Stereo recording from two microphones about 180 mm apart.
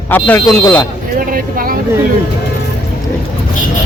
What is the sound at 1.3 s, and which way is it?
Vehicle, 50° right (ahead or behind).